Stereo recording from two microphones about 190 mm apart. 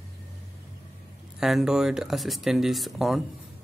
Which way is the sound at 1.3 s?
Centre (ahead or behind).